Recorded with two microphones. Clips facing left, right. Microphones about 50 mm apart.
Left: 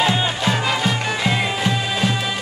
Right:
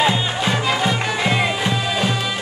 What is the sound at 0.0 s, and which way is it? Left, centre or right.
Music, centre.